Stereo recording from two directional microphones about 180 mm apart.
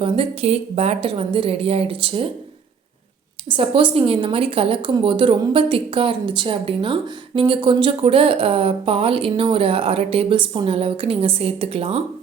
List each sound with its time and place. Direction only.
0.0 s a woman's voice: 35° right (ahead or behind)
3.5 s a woman's voice: 30° right (ahead or behind)